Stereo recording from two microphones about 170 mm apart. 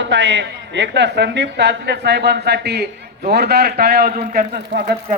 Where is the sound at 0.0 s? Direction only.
90° right; by 4.8 s 55° right (ahead or behind).